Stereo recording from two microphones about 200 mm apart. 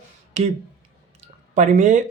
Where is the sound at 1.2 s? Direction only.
40° right (ahead or behind).